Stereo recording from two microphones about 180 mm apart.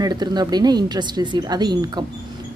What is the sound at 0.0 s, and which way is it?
A woman's voice, 25° right (ahead or behind).